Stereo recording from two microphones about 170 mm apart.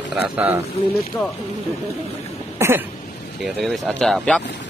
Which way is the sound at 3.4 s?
Centre (ahead or behind).